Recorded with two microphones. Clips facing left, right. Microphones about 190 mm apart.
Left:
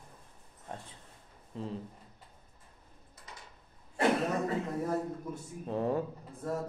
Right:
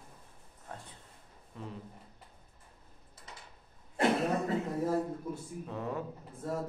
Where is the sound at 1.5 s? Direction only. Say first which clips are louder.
Left 5 dB; 30° left (ahead or behind).